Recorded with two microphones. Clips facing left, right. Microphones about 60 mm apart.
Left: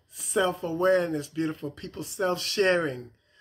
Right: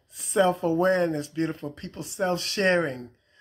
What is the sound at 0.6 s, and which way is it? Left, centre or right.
Speech, right.